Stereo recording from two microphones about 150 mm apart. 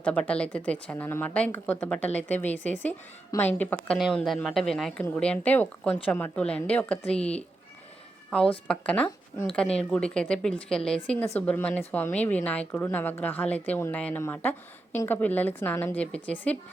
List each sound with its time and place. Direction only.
0.0 s a woman's voice: 10° left (ahead or behind)
8.6 s a woman's voice: 10° left (ahead or behind)